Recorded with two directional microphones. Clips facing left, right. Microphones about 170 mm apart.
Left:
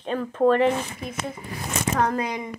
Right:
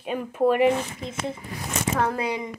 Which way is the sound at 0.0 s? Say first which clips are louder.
Left 2 dB; 10° right (ahead or behind).